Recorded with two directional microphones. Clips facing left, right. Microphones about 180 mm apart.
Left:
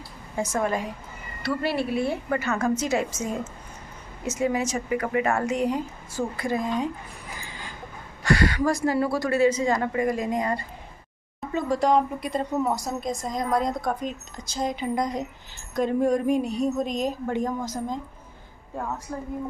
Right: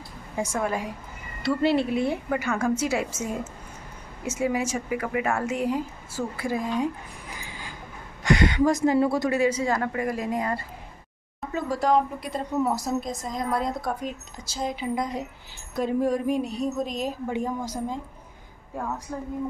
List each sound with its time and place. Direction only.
0.4 s speech: 10° right (ahead or behind)
1.6 s a woman's voice: 20° right (ahead or behind)
8.2 s a woman's voice: 20° right (ahead or behind)